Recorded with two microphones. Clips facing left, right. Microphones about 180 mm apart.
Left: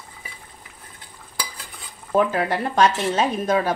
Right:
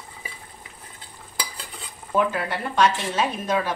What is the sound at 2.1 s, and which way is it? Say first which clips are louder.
A woman's voice: left 4 dB; 40° left (ahead or behind).